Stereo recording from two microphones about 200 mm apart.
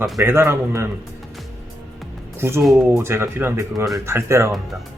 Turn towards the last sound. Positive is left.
turn(degrees=-15)  # may be behind; listen again after turning